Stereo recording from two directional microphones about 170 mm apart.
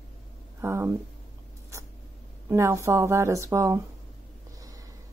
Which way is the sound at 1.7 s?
15° right (ahead or behind).